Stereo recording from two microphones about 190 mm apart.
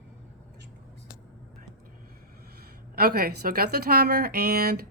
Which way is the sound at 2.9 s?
55° right (ahead or behind).